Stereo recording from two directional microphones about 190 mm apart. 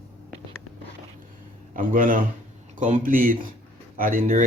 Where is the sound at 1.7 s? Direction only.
45° right (ahead or behind).